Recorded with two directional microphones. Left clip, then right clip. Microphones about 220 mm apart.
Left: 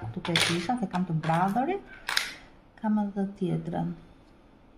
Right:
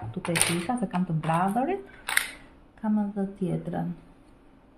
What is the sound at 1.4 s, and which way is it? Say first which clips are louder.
Speech: right 1 dB; 25° right (ahead or behind).